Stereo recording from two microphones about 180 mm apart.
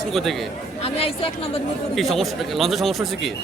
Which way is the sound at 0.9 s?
35° left (ahead or behind).